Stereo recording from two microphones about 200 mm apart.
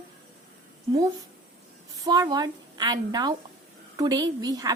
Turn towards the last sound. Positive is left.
turn(degrees=-20)  # may be behind; listen again after turning